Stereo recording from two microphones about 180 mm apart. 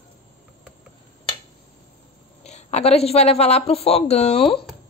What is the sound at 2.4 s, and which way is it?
A woman's voice, 40° left (ahead or behind).